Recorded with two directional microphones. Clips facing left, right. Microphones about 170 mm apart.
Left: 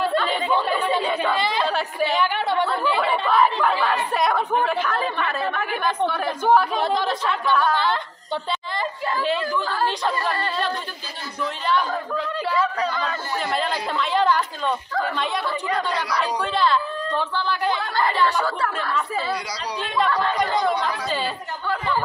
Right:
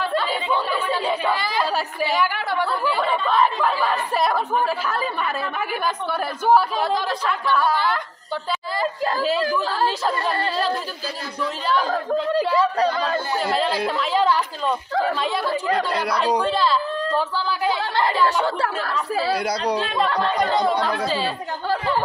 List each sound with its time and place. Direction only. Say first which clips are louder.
0.2 s speech: left 1 dB; 5° right (ahead or behind)
3.0 s a woman's voice: left 1 dB; 5° left (ahead or behind)
9.0 s a sound: right 2 dB; 40° right (ahead or behind)
9.6 s speech: right 2 dB; 30° right (ahead or behind)
9.8 s a woman's voice: right 1 dB; 5° right (ahead or behind)
11.7 s speech: right 3 dB; 40° right (ahead or behind)
13.8 s a woman's voice: right 1 dB; 5° right (ahead or behind)
16.5 s a woman's voice: even; 5° right (ahead or behind)
19.3 s speech: right 7 dB; 55° right (ahead or behind)
20.2 s speech: right 2 dB; 30° right (ahead or behind)
20.7 s speech: right 3 dB; 55° right (ahead or behind)